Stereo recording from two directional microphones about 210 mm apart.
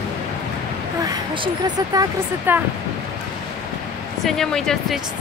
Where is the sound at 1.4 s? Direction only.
15° right (ahead or behind).